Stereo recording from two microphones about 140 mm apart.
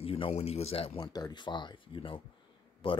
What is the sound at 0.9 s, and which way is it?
Speech, 30° left (ahead or behind).